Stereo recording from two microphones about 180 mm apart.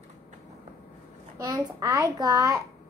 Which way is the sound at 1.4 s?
20° right (ahead or behind).